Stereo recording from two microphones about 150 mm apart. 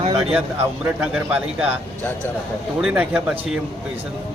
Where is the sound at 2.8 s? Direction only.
5° right (ahead or behind).